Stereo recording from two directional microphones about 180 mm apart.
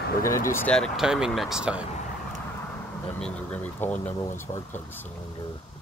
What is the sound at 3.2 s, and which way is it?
Speech, 5° left (ahead or behind).